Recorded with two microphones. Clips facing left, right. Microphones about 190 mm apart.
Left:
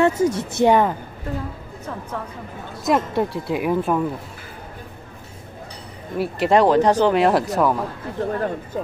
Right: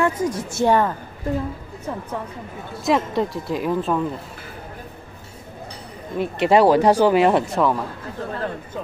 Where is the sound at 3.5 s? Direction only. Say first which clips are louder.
Left 2 dB; 15° left (ahead or behind).